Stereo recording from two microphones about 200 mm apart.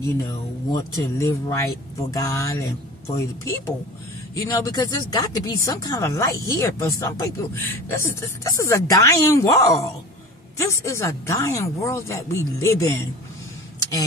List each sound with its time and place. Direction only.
0.7 s speech: 15° left (ahead or behind)